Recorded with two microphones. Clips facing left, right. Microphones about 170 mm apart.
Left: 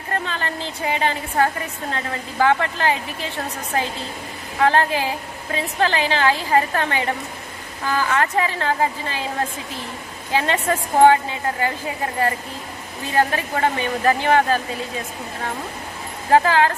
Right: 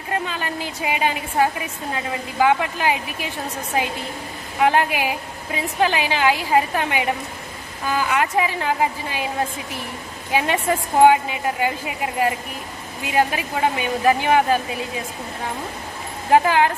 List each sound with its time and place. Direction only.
0.1 s a woman's voice: 10° right (ahead or behind)
4.6 s a woman's voice: 15° right (ahead or behind)
10.3 s a woman's voice: 15° right (ahead or behind)
13.1 s a woman's voice: 15° right (ahead or behind)
16.3 s a woman's voice: 15° right (ahead or behind)